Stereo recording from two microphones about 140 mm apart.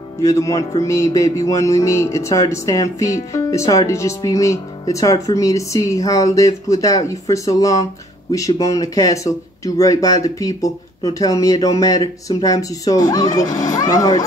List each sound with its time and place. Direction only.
0.2 s speech: 25° left (ahead or behind)